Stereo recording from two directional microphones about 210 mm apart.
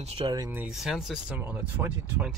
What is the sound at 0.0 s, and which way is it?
Speech, 25° right (ahead or behind).